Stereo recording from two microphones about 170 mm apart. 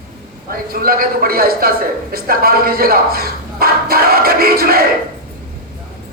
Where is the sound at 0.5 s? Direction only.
60° right (ahead or behind).